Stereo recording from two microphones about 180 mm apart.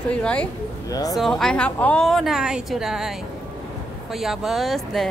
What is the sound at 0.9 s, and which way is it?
Speech, 20° left (ahead or behind).